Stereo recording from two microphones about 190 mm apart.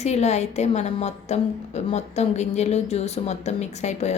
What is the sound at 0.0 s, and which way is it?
A woman's voice, 35° left (ahead or behind).